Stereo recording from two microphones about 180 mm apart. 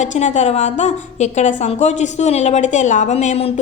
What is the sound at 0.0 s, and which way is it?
A woman's voice, 40° left (ahead or behind).